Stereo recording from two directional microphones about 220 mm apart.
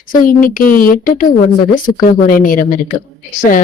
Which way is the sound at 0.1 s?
40° left (ahead or behind).